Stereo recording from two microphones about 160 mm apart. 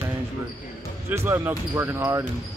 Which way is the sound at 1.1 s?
15° right (ahead or behind).